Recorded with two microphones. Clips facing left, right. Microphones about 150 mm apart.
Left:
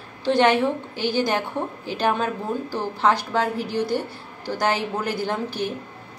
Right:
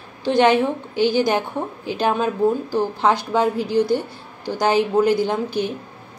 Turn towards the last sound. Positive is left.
turn(degrees=-15)  # may be behind; listen again after turning